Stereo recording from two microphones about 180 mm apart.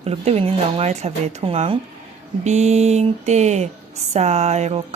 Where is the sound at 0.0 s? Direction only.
35° right (ahead or behind).